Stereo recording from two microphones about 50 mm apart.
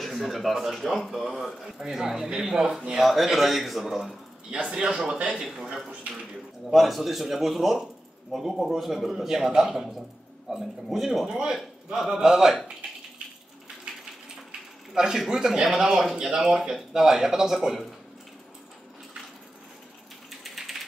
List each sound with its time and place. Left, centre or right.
0.0 s speech: centre
4.5 s speech: centre
6.7 s speech: centre
11.2 s speech: centre
13.9 s a sound: centre
15.0 s speech: centre
20.2 s typewriter: centre